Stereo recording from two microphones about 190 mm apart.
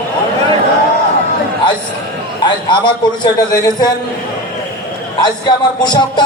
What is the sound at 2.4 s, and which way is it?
Music, 25° left (ahead or behind).